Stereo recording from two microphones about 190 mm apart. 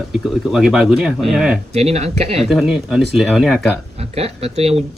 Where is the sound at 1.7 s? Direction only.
35° right (ahead or behind).